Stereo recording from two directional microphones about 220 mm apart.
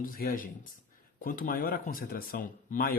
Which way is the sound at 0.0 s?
40° left (ahead or behind).